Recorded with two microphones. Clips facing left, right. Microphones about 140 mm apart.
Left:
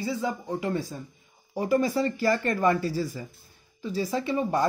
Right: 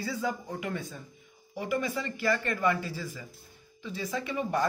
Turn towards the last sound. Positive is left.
turn(degrees=30)  # may be behind; listen again after turning